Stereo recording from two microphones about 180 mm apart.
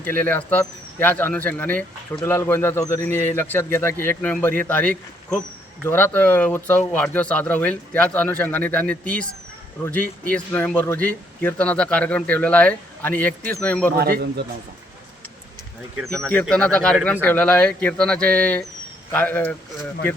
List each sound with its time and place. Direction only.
0.0 s speech: 10° left (ahead or behind)
14.0 s speech: 60° right (ahead or behind)
16.0 s speech: 15° right (ahead or behind)
16.3 s speech: 10° left (ahead or behind)